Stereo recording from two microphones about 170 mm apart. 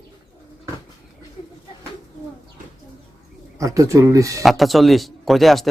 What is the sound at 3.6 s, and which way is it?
Speech, 20° right (ahead or behind).